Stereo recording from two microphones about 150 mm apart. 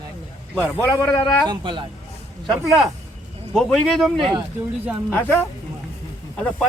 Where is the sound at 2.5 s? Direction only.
Centre (ahead or behind).